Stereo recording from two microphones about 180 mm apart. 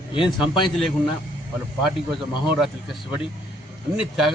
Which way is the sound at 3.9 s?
Centre (ahead or behind).